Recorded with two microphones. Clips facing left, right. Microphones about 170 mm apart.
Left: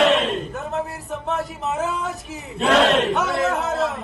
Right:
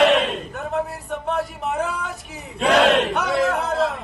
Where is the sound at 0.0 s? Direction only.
Centre (ahead or behind).